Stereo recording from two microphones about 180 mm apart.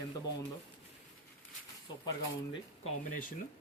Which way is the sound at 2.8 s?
45° left (ahead or behind).